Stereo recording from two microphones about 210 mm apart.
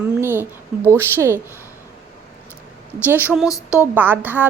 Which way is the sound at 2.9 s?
10° right (ahead or behind).